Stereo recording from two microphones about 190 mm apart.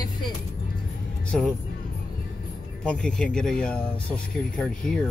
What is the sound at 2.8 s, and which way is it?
Speech, 5° left (ahead or behind).